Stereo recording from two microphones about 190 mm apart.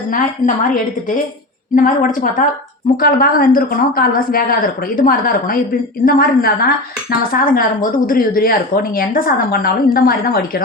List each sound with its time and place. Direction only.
0.1 s speech: 45° left (ahead or behind)